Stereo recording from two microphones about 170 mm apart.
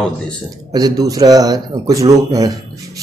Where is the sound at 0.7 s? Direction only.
20° right (ahead or behind).